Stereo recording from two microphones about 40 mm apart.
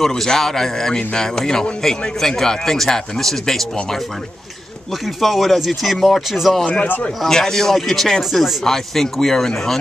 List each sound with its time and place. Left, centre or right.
0.0 s a man's voice: centre
5.0 s speech: centre
6.6 s a man's voice: left
7.2 s speech: centre
8.6 s a man's voice: centre